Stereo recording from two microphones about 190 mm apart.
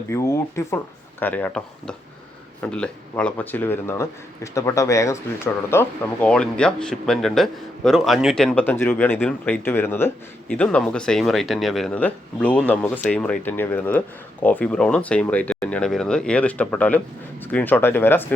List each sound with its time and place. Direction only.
0.1 s speech: 15° left (ahead or behind)